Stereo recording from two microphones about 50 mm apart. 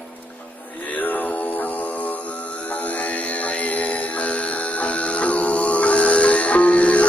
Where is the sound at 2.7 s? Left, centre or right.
Left.